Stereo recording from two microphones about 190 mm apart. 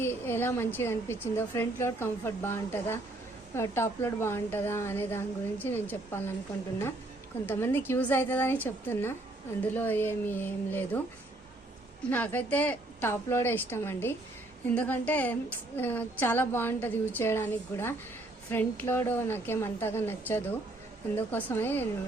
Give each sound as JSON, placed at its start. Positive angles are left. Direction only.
{"t": 0.0, "sound": "a woman's voice", "side_deg": 10}
{"t": 7.4, "sound": "a woman's voice", "side_deg": 10}
{"t": 12.1, "sound": "a woman's voice", "side_deg": 10}